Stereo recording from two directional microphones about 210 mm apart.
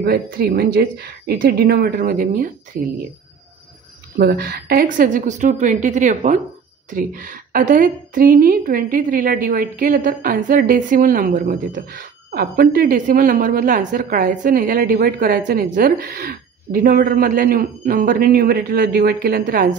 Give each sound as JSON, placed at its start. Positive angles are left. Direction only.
{"t": 0.0, "sound": "speech", "side_deg": -50}
{"t": 4.2, "sound": "a woman's voice", "side_deg": -45}